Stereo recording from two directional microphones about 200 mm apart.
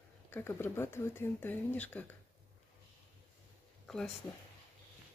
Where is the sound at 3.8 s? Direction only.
5° left (ahead or behind).